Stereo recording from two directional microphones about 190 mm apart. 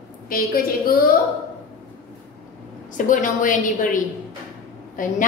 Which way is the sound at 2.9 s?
45° left (ahead or behind).